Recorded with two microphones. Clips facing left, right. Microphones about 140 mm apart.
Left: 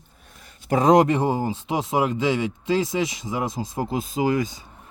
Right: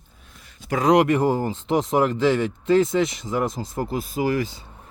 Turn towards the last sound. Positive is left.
turn(degrees=15)  # may be behind; listen again after turning